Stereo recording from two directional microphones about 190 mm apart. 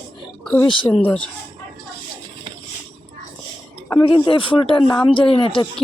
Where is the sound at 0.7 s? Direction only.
25° left (ahead or behind).